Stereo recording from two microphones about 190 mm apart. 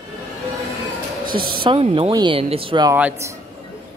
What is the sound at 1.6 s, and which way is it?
Speech, 30° right (ahead or behind).